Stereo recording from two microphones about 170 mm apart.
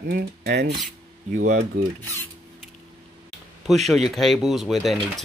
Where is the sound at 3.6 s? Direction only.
Centre (ahead or behind).